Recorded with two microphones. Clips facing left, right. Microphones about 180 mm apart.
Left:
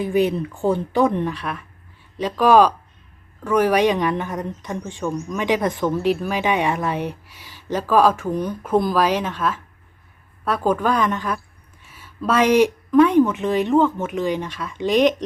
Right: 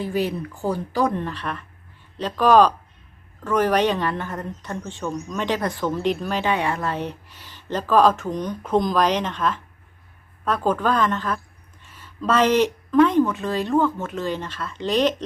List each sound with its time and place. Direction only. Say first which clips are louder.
0.0 s speech: left 5 dB; 20° left (ahead or behind)